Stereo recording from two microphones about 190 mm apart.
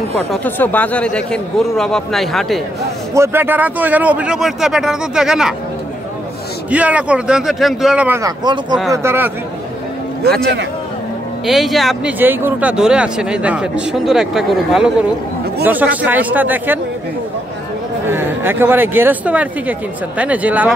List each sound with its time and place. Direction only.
0.3 s speech: 10° left (ahead or behind)
3.2 s speech: 10° right (ahead or behind)
6.7 s speech: 5° right (ahead or behind)
8.2 s speech: 20° right (ahead or behind)
11.4 s speech: centre (ahead or behind)
18.0 s speech: 10° right (ahead or behind)